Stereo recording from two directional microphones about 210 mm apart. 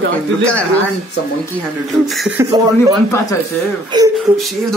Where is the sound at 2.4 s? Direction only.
15° right (ahead or behind).